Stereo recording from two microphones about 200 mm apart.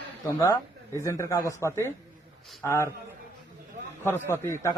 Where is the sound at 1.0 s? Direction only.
15° left (ahead or behind).